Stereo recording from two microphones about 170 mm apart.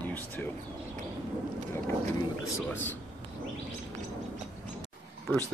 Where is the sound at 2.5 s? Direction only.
10° left (ahead or behind).